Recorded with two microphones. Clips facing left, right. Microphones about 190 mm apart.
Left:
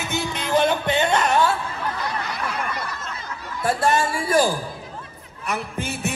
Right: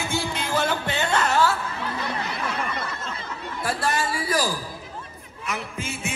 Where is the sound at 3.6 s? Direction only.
25° left (ahead or behind).